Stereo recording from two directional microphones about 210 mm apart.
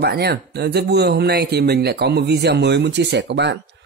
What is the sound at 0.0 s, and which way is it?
Speech, 50° right (ahead or behind).